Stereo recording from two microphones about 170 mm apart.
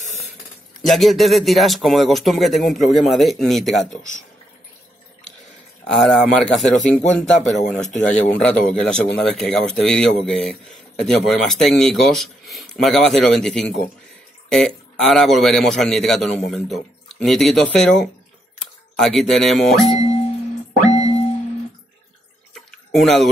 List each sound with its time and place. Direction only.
0.8 s speech: centre (ahead or behind)
5.9 s speech: centre (ahead or behind)
15.0 s speech: centre (ahead or behind)
20.0 s music: 35° left (ahead or behind)
22.5 s a sound: centre (ahead or behind)